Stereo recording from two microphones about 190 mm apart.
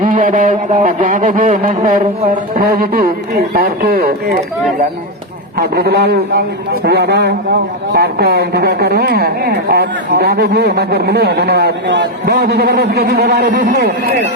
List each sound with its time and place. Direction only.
0.0 s speech: 40° right (ahead or behind)
5.5 s a woman's voice: 60° right (ahead or behind)